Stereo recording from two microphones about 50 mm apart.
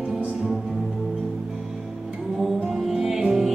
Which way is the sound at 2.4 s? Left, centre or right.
Centre.